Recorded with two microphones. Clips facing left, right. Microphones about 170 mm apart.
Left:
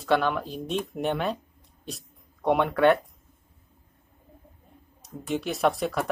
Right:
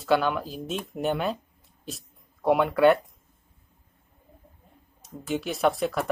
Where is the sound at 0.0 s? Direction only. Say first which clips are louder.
Even; centre (ahead or behind).